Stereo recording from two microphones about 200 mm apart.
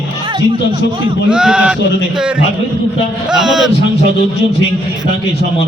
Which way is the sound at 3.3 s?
5° right (ahead or behind).